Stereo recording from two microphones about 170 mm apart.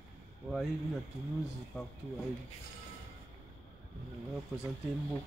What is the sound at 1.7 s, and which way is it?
Speech, centre (ahead or behind).